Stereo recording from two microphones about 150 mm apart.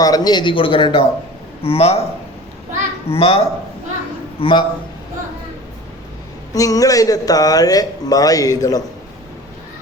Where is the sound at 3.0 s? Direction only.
40° left (ahead or behind).